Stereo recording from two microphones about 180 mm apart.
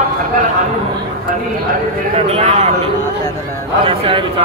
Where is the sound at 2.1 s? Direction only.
35° right (ahead or behind).